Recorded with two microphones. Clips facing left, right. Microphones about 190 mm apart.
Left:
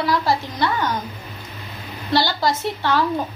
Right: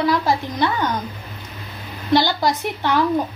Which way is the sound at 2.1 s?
20° right (ahead or behind).